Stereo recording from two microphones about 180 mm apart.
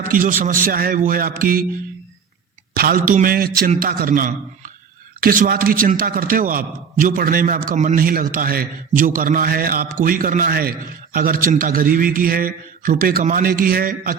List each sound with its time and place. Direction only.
0.1 s a man's voice: 50° right (ahead or behind)
2.7 s a man's voice: 50° right (ahead or behind)